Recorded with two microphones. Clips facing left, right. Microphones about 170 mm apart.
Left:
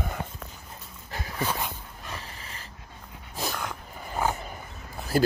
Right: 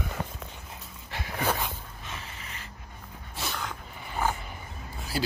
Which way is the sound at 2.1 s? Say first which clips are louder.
Left 1 dB; 35° left (ahead or behind).